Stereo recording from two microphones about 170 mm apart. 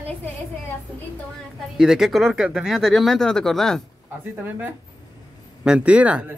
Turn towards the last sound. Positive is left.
turn(degrees=-5)  # may be behind; listen again after turning